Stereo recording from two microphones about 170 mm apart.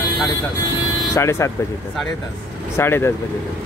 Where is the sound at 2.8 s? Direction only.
15° left (ahead or behind).